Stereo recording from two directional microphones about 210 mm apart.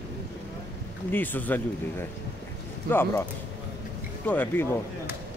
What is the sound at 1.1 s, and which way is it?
Speech, 10° left (ahead or behind).